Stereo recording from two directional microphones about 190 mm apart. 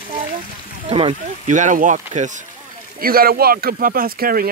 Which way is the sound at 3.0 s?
50° right (ahead or behind).